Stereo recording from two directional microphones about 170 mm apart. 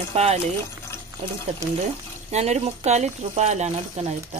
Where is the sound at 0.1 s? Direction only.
35° right (ahead or behind).